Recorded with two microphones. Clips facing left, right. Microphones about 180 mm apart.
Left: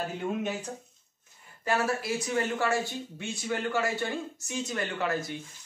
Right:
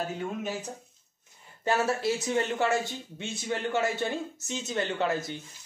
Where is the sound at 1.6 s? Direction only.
25° right (ahead or behind).